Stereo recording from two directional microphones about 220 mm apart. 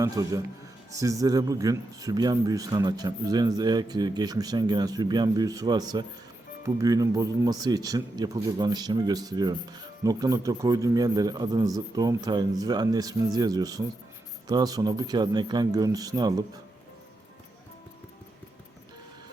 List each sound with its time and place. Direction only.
0.0 s speech: 15° right (ahead or behind)